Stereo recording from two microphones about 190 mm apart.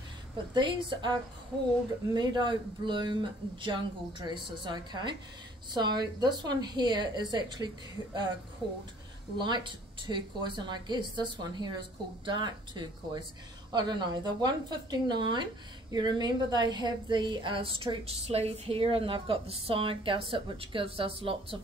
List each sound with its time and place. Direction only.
0.6 s a woman's voice: 25° right (ahead or behind)
2.1 s a woman's voice: 25° right (ahead or behind)
9.4 s a woman's voice: 25° right (ahead or behind)